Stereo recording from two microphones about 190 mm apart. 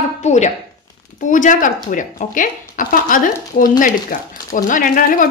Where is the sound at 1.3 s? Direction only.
45° left (ahead or behind).